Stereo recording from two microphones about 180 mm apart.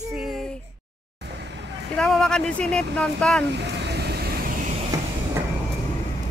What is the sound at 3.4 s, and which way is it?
Vehicle, 70° right (ahead or behind).